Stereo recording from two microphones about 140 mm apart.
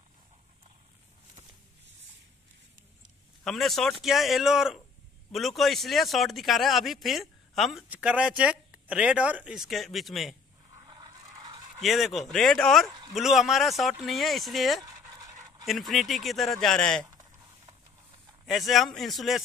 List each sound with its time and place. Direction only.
3.4 s speech: centre (ahead or behind)
10.7 s scrape: 30° right (ahead or behind)
11.8 s speech: centre (ahead or behind)
18.4 s speech: centre (ahead or behind)